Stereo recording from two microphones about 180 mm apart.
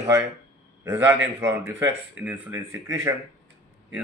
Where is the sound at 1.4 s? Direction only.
10° right (ahead or behind).